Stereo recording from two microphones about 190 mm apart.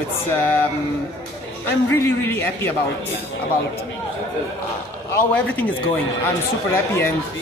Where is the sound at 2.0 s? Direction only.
10° left (ahead or behind).